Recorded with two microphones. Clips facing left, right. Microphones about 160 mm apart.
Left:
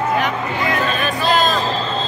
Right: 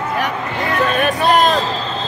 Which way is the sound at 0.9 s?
60° right (ahead or behind).